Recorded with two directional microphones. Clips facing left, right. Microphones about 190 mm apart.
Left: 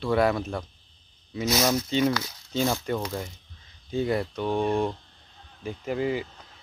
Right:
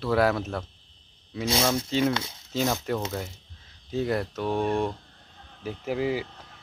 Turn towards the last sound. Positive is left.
turn(degrees=-5)  # may be behind; listen again after turning